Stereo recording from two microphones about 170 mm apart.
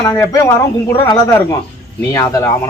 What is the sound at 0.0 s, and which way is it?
Speech, 20° left (ahead or behind).